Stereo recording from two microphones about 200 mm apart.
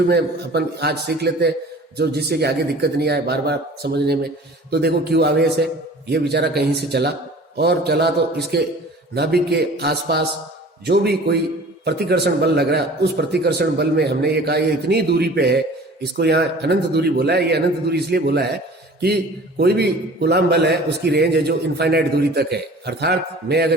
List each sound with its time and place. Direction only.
0.1 s a man's voice: 55° right (ahead or behind)